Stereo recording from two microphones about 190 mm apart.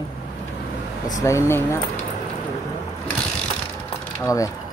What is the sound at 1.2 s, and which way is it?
Speech, 15° left (ahead or behind).